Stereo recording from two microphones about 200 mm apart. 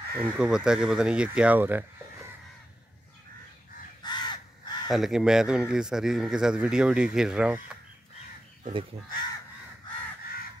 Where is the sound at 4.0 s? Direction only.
20° left (ahead or behind).